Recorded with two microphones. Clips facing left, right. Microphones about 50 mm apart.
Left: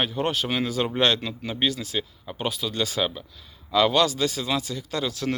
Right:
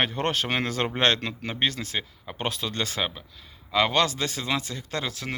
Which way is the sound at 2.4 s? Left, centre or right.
Right.